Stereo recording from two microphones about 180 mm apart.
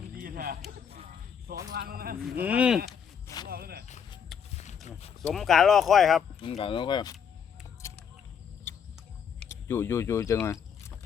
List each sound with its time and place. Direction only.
0.2 s a sound: 55° right (ahead or behind)
1.7 s speech: 55° right (ahead or behind)
2.4 s speech: 10° right (ahead or behind)
3.5 s a sound: 60° right (ahead or behind)
4.3 s a sound: centre (ahead or behind)
4.9 s speech: 35° left (ahead or behind)
5.3 s speech: centre (ahead or behind)
6.4 s speech: 30° left (ahead or behind)
9.5 s speech: 15° left (ahead or behind)
10.3 s vehicle: 15° left (ahead or behind)